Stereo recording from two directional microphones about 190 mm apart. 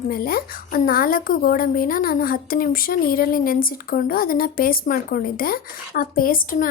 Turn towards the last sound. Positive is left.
turn(degrees=45)  # may be behind; listen again after turning